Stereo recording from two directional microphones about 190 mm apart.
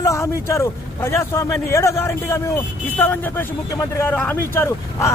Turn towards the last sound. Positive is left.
turn(degrees=15)  # may be behind; listen again after turning